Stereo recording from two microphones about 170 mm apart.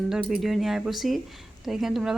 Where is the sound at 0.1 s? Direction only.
Centre (ahead or behind).